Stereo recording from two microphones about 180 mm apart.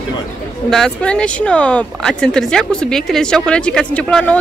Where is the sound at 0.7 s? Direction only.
5° left (ahead or behind).